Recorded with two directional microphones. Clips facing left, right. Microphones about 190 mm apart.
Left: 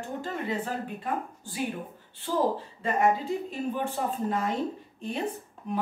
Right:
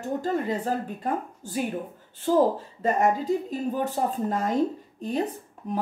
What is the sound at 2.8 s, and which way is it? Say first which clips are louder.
A woman's voice: right 2 dB; 40° right (ahead or behind).